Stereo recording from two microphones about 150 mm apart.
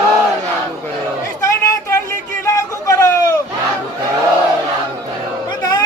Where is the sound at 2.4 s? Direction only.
20° left (ahead or behind).